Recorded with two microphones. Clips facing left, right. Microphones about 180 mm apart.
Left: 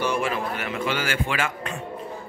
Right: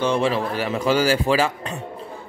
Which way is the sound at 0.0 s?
30° right (ahead or behind).